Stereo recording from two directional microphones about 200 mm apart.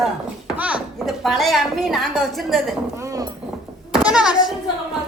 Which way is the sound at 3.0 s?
15° right (ahead or behind).